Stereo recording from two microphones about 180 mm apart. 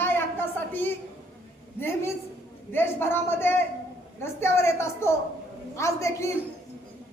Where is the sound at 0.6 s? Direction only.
10° left (ahead or behind).